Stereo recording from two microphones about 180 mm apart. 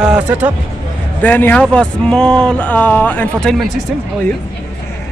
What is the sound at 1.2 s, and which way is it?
Speech, 10° left (ahead or behind).